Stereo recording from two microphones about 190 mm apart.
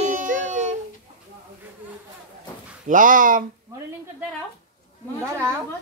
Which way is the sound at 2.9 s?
45° right (ahead or behind).